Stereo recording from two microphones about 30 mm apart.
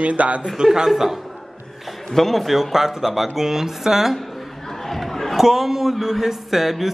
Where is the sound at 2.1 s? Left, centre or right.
Centre.